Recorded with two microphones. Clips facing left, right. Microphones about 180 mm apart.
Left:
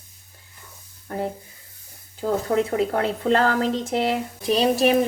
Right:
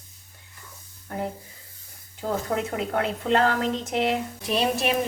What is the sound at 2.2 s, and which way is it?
Speech, 40° left (ahead or behind).